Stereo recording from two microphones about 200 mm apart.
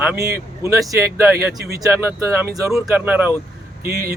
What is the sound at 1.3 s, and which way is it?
Speech, 55° right (ahead or behind).